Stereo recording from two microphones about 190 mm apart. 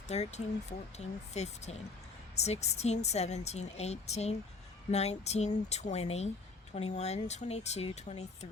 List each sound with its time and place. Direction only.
0.1 s speech: 35° left (ahead or behind)